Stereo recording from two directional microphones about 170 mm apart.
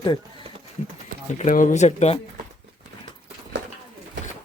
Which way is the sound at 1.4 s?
50° left (ahead or behind).